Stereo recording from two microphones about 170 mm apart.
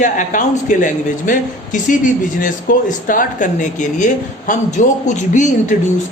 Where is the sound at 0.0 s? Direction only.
45° left (ahead or behind).